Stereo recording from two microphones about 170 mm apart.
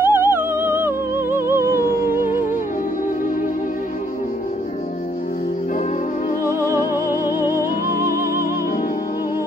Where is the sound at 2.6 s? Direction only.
55° left (ahead or behind).